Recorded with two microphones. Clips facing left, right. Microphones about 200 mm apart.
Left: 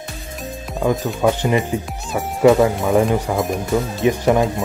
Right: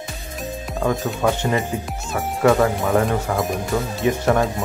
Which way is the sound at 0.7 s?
Centre (ahead or behind).